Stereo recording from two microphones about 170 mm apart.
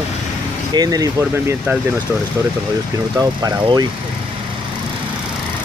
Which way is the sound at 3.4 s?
25° right (ahead or behind).